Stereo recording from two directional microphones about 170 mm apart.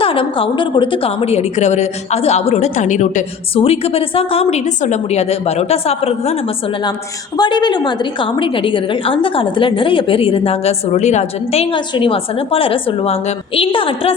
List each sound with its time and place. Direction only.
0.0 s a woman's voice: 30° left (ahead or behind)
7.3 s a woman's voice: 25° left (ahead or behind)